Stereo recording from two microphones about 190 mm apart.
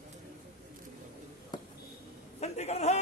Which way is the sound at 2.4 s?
35° left (ahead or behind).